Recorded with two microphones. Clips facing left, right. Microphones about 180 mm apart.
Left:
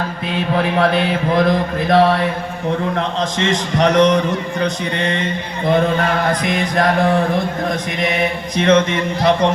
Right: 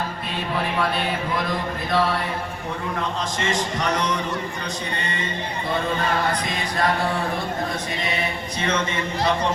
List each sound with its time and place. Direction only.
0.8 s speech: 80° left
3.0 s a man's voice: 90° left
8.5 s a man's voice: 80° left